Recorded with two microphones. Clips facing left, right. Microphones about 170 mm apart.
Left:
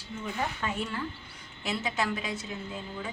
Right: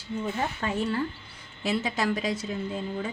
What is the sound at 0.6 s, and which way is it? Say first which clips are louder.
A woman's voice: right 5 dB; 35° right (ahead or behind).